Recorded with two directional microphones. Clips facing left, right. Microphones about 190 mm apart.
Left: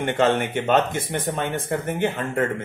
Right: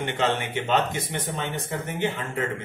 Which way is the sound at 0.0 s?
50° left (ahead or behind).